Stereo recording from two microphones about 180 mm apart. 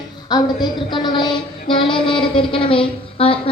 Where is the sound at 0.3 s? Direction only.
25° left (ahead or behind).